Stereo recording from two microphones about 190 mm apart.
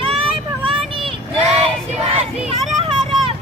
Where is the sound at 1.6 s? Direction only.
30° right (ahead or behind).